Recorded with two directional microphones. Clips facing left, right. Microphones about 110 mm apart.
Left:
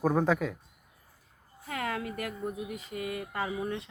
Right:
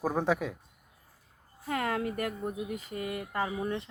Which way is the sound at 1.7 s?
40° right (ahead or behind).